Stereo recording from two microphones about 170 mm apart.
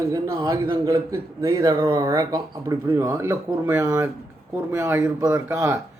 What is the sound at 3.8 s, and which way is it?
Speech, 20° right (ahead or behind).